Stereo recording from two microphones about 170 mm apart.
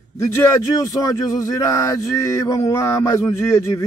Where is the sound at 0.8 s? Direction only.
20° left (ahead or behind).